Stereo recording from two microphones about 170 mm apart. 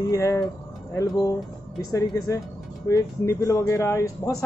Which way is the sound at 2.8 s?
15° left (ahead or behind).